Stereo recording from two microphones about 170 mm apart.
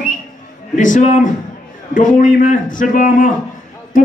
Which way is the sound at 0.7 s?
50° left (ahead or behind).